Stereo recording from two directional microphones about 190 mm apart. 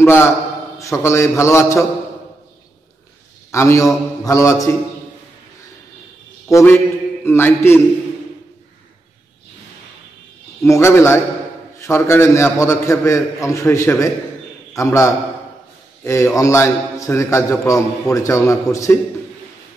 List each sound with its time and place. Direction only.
0.0 s a man's voice: 15° left (ahead or behind)
3.5 s a man's voice: 15° left (ahead or behind)
6.5 s a man's voice: 15° left (ahead or behind)
10.6 s a man's voice: 15° left (ahead or behind)